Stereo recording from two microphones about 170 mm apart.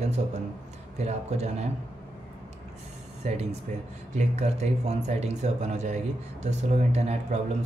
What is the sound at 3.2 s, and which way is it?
Speech, 40° right (ahead or behind).